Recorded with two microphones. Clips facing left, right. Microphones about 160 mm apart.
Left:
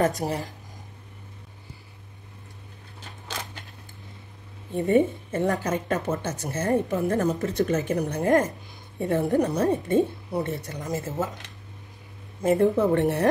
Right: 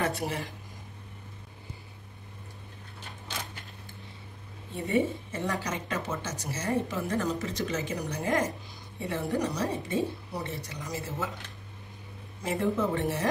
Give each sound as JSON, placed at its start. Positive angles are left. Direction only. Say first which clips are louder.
{"t": 0.0, "sound": "speech", "louder": "left 6 dB", "side_deg": 40}
{"t": 4.7, "sound": "speech", "louder": "left 7 dB", "side_deg": 50}
{"t": 12.4, "sound": "a woman's voice", "louder": "left 8 dB", "side_deg": 55}